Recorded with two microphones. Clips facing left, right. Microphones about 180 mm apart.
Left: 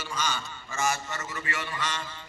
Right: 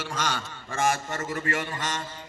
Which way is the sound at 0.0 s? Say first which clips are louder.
Right 2 dB; 90° right.